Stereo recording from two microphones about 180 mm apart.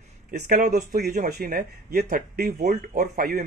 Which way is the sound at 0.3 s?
45° right (ahead or behind).